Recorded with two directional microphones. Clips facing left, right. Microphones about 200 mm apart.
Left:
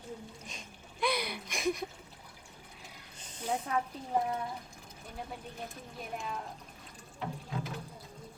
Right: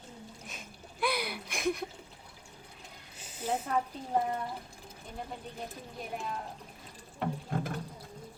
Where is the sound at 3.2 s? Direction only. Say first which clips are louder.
Right 1 dB; 5° right (ahead or behind).